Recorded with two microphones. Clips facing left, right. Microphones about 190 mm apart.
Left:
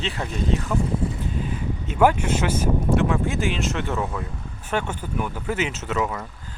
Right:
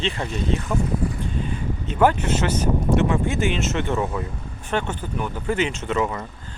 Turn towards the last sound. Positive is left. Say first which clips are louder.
# right 2 dB
turn(degrees=0)  # may be behind; listen again after turning